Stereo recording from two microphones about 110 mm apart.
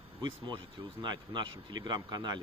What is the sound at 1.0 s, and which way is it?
Speech, 40° right (ahead or behind).